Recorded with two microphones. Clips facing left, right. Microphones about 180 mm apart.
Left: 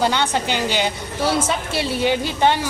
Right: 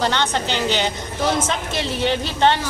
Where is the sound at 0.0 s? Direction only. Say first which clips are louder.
Left 1 dB; 10° left (ahead or behind).